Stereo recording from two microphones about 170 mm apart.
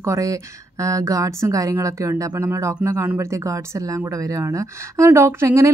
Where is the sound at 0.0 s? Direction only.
20° right (ahead or behind).